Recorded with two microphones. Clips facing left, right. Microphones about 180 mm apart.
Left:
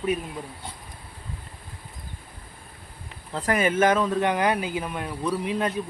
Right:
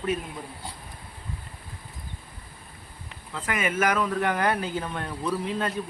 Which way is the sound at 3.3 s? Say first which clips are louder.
Left 5 dB; 35° left (ahead or behind).